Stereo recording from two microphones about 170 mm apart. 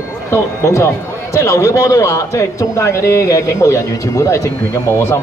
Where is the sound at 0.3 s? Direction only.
15° left (ahead or behind).